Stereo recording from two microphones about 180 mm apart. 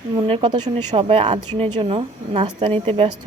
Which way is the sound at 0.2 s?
30° right (ahead or behind).